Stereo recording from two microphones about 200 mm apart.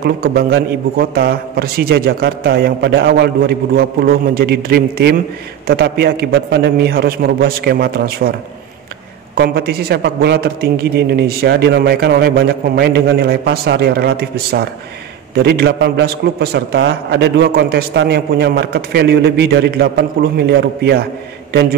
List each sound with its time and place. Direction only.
0.0 s a man's voice: 50° right (ahead or behind)